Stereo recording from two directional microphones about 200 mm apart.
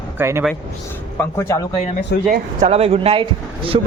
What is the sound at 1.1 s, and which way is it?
Speech, 15° left (ahead or behind).